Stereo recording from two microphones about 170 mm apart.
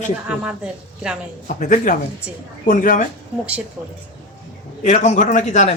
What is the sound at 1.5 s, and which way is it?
A man's voice, 50° left (ahead or behind).